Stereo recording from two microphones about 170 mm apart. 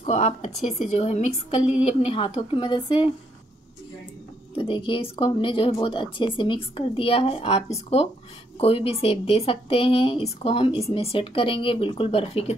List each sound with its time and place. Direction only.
0.0 s speech: 45° left (ahead or behind); by 3.1 s 30° left (ahead or behind)
4.6 s speech: 30° left (ahead or behind)